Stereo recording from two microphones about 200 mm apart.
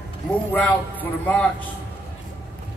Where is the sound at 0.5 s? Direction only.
5° left (ahead or behind).